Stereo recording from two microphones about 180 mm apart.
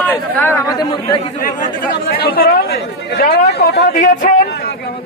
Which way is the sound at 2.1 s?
55° left (ahead or behind).